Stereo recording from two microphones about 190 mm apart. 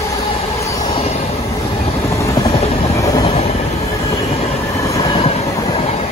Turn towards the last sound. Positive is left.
turn(degrees=20)  # may be behind; listen again after turning